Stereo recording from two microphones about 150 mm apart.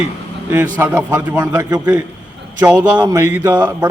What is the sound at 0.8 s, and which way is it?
A man's voice, 15° right (ahead or behind).